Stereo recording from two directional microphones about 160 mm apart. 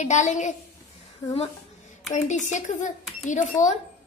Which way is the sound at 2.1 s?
50° left (ahead or behind).